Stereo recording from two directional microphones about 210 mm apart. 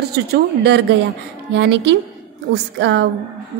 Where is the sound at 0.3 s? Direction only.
50° right (ahead or behind).